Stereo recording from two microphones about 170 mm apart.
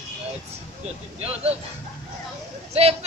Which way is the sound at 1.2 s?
35° right (ahead or behind).